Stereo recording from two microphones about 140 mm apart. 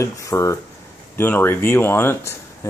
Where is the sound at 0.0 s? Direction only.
20° left (ahead or behind).